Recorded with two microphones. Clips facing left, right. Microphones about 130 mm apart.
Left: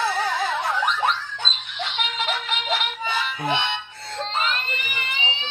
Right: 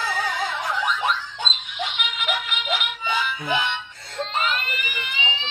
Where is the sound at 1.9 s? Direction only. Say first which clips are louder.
Left 4 dB; 30° left (ahead or behind).